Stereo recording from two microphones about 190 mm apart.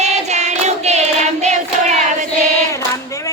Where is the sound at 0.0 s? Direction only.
35° right (ahead or behind).